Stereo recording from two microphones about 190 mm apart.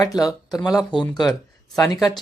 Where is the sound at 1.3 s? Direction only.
20° left (ahead or behind).